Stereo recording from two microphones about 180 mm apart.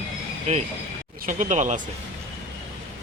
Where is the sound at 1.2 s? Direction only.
45° right (ahead or behind).